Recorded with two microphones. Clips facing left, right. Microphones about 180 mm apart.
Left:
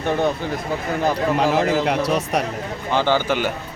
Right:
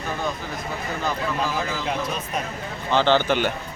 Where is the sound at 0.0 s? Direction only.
70° left (ahead or behind).